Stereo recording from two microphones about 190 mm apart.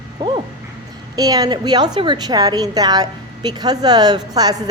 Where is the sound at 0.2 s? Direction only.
25° right (ahead or behind).